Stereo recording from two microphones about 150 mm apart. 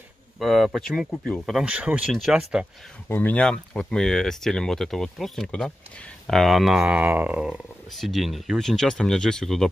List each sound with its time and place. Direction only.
0.4 s speech: centre (ahead or behind)
3.1 s speech: 10° left (ahead or behind)